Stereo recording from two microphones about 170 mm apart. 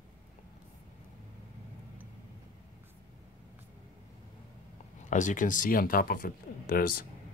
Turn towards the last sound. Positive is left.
turn(degrees=60)  # may be behind; listen again after turning